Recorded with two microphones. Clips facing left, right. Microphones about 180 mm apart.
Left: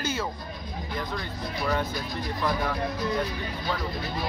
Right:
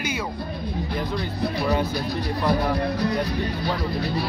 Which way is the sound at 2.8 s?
70° right (ahead or behind).